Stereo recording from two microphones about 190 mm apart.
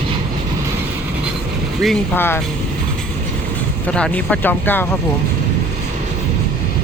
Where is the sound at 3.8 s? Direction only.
5° left (ahead or behind).